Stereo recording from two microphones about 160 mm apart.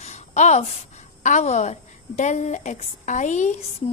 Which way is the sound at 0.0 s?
45° left (ahead or behind).